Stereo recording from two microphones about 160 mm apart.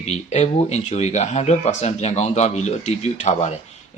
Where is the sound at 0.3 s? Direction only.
45° left (ahead or behind).